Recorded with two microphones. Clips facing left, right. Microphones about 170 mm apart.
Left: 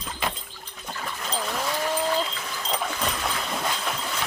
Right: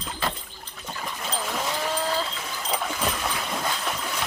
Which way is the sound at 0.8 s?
5° right (ahead or behind).